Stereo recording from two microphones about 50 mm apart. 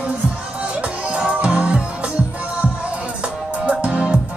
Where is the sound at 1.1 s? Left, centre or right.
Right.